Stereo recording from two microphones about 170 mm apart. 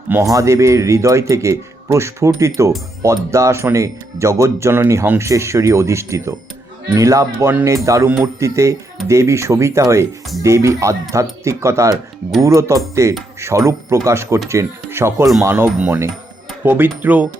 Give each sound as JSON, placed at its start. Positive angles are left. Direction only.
{"t": 0.1, "sound": "speech", "side_deg": -20}
{"t": 6.9, "sound": "cutlery", "side_deg": -20}
{"t": 8.1, "sound": "speech", "side_deg": -15}